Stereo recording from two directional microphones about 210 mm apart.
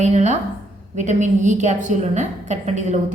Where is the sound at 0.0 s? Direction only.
35° right (ahead or behind).